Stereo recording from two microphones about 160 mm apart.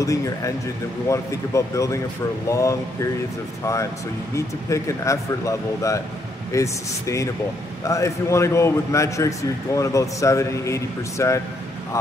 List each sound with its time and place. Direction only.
0.0 s a man's voice: 20° left (ahead or behind)